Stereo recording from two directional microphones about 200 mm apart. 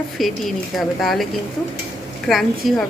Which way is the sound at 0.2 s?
Centre (ahead or behind).